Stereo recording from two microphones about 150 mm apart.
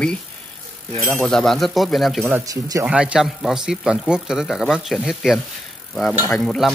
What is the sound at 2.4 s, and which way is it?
Speech, 25° right (ahead or behind).